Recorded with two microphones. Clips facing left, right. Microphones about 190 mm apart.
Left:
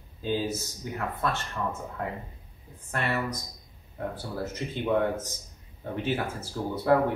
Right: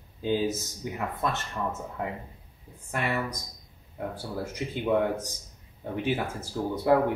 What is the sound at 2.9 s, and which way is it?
Speech, 10° right (ahead or behind).